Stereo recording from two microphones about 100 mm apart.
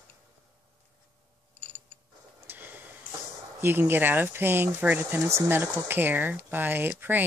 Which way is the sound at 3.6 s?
20° right (ahead or behind).